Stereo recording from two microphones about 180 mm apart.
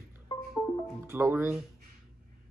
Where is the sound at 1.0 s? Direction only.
15° right (ahead or behind).